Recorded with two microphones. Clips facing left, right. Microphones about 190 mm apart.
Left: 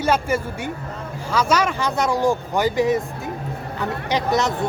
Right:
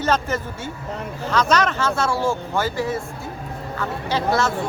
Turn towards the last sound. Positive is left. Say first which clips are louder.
# even
turn(degrees=20)  # may be behind; listen again after turning